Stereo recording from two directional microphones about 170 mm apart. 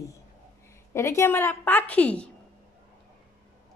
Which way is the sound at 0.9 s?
15° left (ahead or behind).